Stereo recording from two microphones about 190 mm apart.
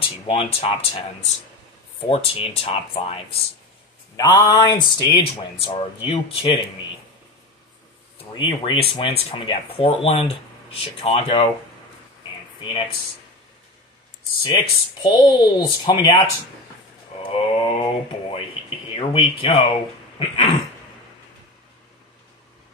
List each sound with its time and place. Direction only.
0.0 s speech: 30° left (ahead or behind)
4.2 s speech: 20° left (ahead or behind)
8.4 s speech: 25° left (ahead or behind)
14.4 s speech: 25° left (ahead or behind)
17.2 s a sound: 30° left (ahead or behind)
18.9 s speech: 30° left (ahead or behind)